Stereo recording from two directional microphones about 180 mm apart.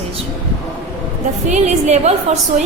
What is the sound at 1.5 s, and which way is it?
Speech, 40° right (ahead or behind).